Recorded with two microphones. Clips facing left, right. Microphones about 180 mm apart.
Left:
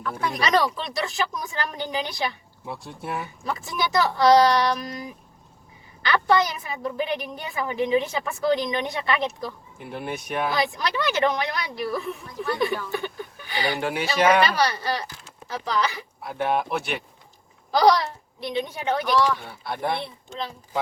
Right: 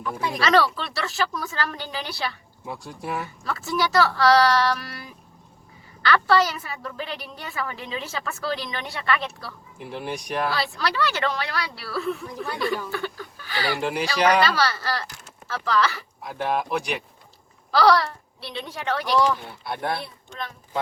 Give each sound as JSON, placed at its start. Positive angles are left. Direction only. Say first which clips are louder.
{"t": 0.0, "sound": "speech", "louder": "even", "side_deg": -10}
{"t": 0.3, "sound": "a woman's voice", "louder": "right 2 dB", "side_deg": 15}
{"t": 2.6, "sound": "speech", "louder": "right 1 dB", "side_deg": 0}
{"t": 3.4, "sound": "a woman's voice", "louder": "right 3 dB", "side_deg": 15}
{"t": 9.7, "sound": "speech", "louder": "right 5 dB", "side_deg": 0}
{"t": 10.5, "sound": "a woman's voice", "louder": "left 1 dB", "side_deg": 15}
{"t": 12.9, "sound": "a sound", "louder": "left 1 dB", "side_deg": 15}
{"t": 13.7, "sound": "speech", "louder": "right 1 dB", "side_deg": 0}
{"t": 14.4, "sound": "a woman's voice", "louder": "left 1 dB", "side_deg": 15}
{"t": 16.2, "sound": "speech", "louder": "left 1 dB", "side_deg": 0}
{"t": 17.7, "sound": "speech", "louder": "even", "side_deg": 15}
{"t": 19.4, "sound": "speech", "louder": "left 1 dB", "side_deg": 0}
{"t": 20.0, "sound": "speech", "louder": "left 3 dB", "side_deg": 25}